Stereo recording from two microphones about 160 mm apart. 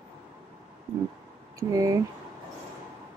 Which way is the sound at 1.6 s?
20° right (ahead or behind).